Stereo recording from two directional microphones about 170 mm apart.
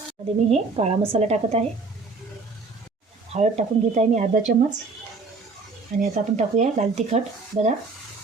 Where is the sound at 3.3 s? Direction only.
40° right (ahead or behind).